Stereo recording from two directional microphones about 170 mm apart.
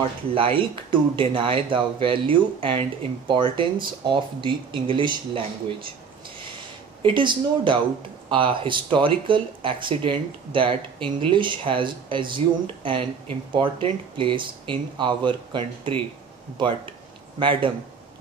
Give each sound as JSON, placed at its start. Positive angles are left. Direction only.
{"t": 0.3, "sound": "speech", "side_deg": -30}
{"t": 7.0, "sound": "speech", "side_deg": -30}